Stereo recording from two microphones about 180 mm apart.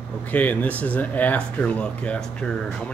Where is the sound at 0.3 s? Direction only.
10° left (ahead or behind).